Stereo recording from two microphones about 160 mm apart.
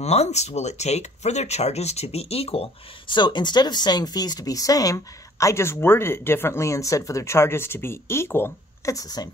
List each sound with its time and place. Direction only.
0.0 s speech: 40° left (ahead or behind); by 9.3 s 25° left (ahead or behind)